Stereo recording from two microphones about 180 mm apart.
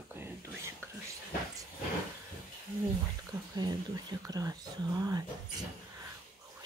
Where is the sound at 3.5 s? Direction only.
25° right (ahead or behind).